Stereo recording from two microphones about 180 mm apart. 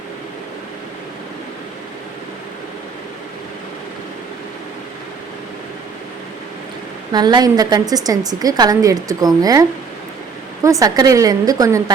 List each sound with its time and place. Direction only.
7.1 s a woman's voice: 25° right (ahead or behind)